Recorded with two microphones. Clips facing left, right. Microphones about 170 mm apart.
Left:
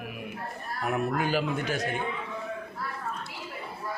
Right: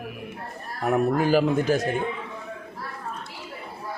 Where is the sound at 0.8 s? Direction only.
40° right (ahead or behind).